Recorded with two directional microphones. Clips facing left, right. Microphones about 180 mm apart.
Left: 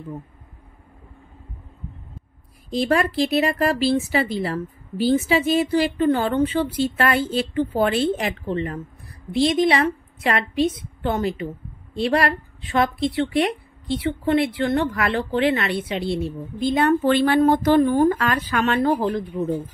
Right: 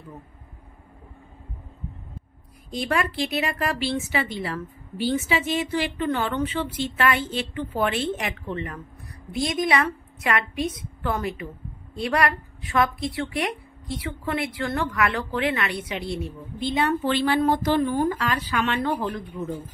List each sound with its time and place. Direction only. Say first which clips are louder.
2.7 s a woman's voice: left 5 dB; 35° left (ahead or behind)
16.5 s a woman's voice: left 5 dB; 45° left (ahead or behind)